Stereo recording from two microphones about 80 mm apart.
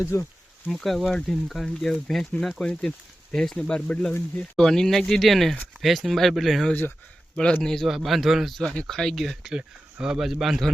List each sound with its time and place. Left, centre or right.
0.0 s speech: left
0.7 s speech: centre